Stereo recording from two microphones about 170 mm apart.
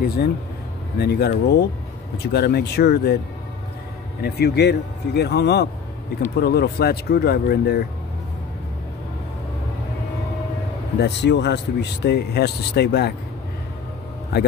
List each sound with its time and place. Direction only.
0.0 s speech: 65° left (ahead or behind)
4.2 s speech: 70° left (ahead or behind)
11.0 s speech: 90° left; by 13.1 s 70° left (ahead or behind)